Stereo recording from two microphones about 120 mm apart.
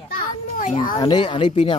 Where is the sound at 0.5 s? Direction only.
90° left.